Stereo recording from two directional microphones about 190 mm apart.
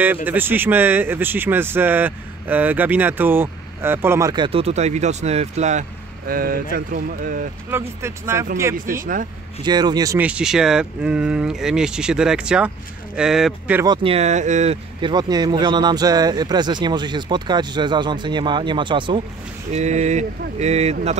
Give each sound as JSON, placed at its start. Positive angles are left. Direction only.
{"t": 0.0, "sound": "speech", "side_deg": -10}
{"t": 7.7, "sound": "speech", "side_deg": -15}
{"t": 9.0, "sound": "speech", "side_deg": -45}
{"t": 9.7, "sound": "speech", "side_deg": -20}
{"t": 10.1, "sound": "speech", "side_deg": -5}
{"t": 13.8, "sound": "speech", "side_deg": -30}
{"t": 19.7, "sound": "speech", "side_deg": -40}